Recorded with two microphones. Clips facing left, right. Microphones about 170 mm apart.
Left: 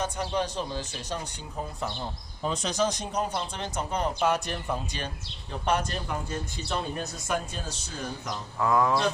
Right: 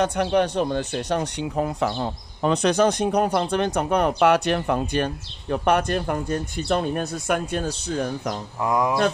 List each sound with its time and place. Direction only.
0.0 s speech: 70° right (ahead or behind)
8.5 s speech: 15° right (ahead or behind)